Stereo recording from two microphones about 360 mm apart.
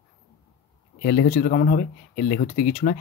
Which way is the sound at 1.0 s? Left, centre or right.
Left.